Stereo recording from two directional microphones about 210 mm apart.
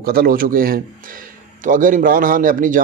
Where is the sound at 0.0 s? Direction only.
45° right (ahead or behind).